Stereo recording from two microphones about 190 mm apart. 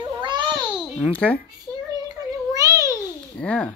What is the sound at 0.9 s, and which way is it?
Speech, 5° left (ahead or behind).